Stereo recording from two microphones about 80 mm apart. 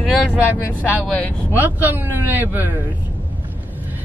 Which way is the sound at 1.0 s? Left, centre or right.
Centre.